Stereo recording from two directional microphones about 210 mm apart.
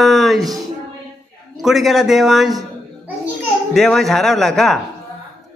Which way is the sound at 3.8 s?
Centre (ahead or behind).